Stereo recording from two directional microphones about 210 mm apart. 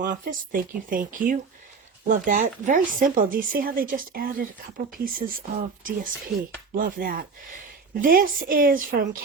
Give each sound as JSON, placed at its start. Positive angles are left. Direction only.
{"t": 0.0, "sound": "speech", "side_deg": -40}